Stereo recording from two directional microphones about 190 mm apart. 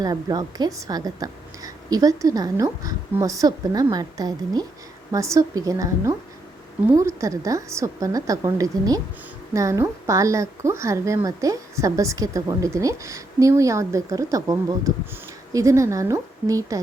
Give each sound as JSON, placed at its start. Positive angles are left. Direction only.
{"t": 0.0, "sound": "a woman's voice", "side_deg": -20}
{"t": 7.2, "sound": "a woman's voice", "side_deg": -15}